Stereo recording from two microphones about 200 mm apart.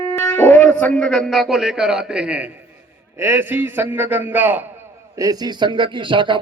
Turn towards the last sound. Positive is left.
turn(degrees=-25)  # may be behind; listen again after turning